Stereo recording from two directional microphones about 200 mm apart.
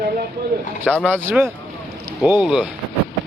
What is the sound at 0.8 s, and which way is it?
Speech, 5° left (ahead or behind).